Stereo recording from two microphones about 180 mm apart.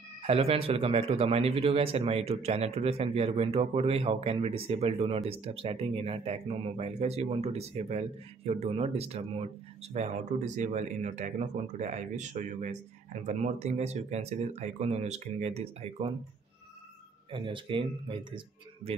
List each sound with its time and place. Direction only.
0.2 s speech: 35° right (ahead or behind)
17.3 s speech: 30° right (ahead or behind)